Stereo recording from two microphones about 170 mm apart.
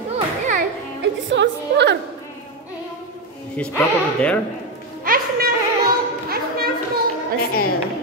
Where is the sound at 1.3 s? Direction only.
90° right.